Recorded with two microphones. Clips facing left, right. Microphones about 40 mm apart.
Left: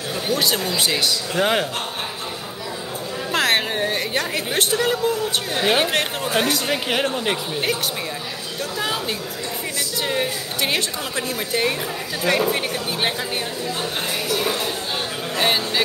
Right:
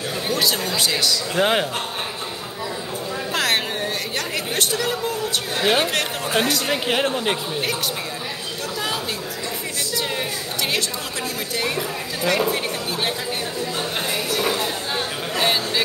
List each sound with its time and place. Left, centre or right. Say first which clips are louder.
0.3 s a woman's voice: left 1 dB; centre
1.3 s a man's voice: right 1 dB; centre
3.3 s a sound: left 3 dB; centre
5.6 s a woman's voice: even; centre
10.0 s a woman's voice: left 3 dB; centre
12.3 s a woman's voice: left 1 dB; centre
15.3 s vehicle: left 1 dB; centre